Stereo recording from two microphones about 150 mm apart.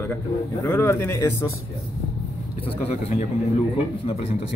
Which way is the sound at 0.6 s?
15° left (ahead or behind).